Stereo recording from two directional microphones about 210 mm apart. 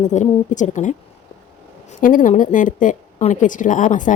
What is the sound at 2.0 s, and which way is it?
Speech, 40° left (ahead or behind).